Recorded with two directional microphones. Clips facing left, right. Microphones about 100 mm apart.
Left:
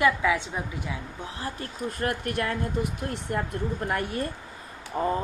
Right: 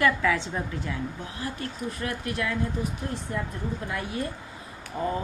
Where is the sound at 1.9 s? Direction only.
50° left (ahead or behind).